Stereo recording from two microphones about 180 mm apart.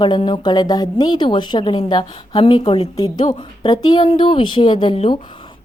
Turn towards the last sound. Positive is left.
turn(degrees=30)  # may be behind; listen again after turning